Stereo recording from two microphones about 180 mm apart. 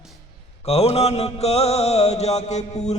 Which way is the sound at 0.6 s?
35° left (ahead or behind).